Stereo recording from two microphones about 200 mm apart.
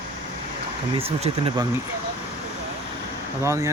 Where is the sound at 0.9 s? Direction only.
30° right (ahead or behind).